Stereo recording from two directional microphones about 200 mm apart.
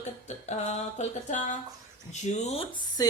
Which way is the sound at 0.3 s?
35° left (ahead or behind).